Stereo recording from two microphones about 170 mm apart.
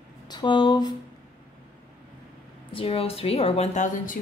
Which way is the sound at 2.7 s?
35° left (ahead or behind).